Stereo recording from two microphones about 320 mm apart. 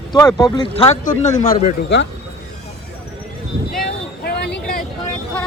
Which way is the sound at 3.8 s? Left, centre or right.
Left.